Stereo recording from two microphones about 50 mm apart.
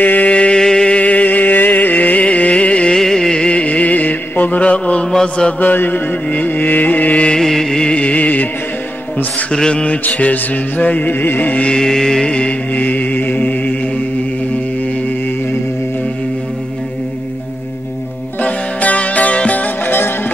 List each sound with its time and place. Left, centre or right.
0.0 s a sound: left
0.6 s a sound: centre
0.9 s music: left
3.0 s chant: centre
5.1 s mantra: centre
5.6 s music: left
7.3 s mantra: centre
7.9 s music: left
9.5 s mantra: centre
10.0 s music: left
11.6 s mantra: centre
12.8 s mantra: left
18.4 s music: left